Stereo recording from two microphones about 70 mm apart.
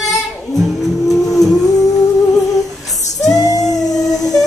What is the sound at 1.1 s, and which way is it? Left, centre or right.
Vehicle, centre.